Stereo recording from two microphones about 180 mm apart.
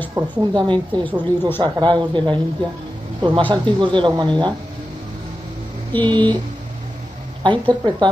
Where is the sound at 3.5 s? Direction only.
25° right (ahead or behind).